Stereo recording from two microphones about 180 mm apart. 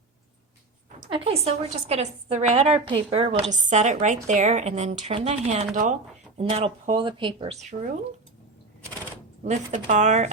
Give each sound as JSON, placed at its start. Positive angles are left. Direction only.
{"t": 1.1, "sound": "a woman's voice", "side_deg": -30}
{"t": 7.6, "sound": "a woman's voice", "side_deg": -40}
{"t": 9.4, "sound": "a woman's voice", "side_deg": -40}